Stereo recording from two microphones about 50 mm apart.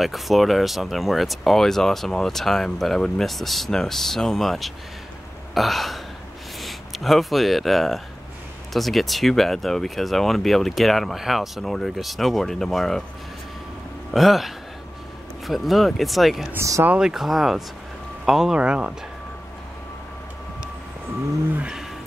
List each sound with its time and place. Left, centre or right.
0.0 s speech: centre
5.5 s burping: centre
6.6 s speech: centre
14.1 s speech: centre
18.6 s speech: right